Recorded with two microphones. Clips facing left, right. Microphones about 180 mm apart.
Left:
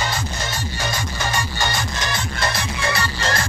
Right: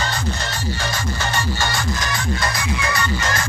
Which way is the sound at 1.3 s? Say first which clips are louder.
Even; 15° left (ahead or behind).